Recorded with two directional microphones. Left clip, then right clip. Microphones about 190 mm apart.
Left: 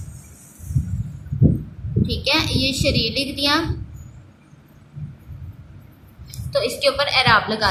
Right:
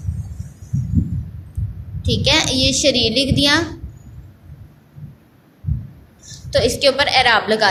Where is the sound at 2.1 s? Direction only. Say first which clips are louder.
Right 5 dB; 25° right (ahead or behind).